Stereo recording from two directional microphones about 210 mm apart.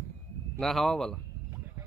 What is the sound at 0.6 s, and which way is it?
Speech, centre (ahead or behind).